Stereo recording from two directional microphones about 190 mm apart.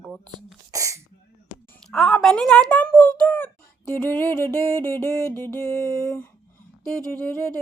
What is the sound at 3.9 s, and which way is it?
Music, 10° left (ahead or behind).